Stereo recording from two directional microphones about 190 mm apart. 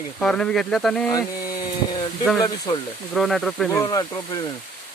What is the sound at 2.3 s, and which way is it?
Speech, 20° left (ahead or behind).